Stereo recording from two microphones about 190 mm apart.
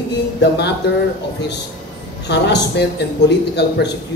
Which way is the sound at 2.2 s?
65° left (ahead or behind).